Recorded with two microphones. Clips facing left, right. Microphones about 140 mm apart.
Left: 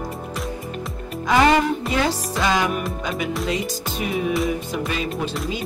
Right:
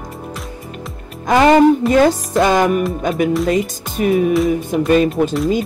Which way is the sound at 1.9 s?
50° right (ahead or behind).